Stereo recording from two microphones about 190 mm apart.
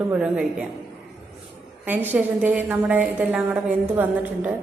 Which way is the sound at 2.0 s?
10° right (ahead or behind).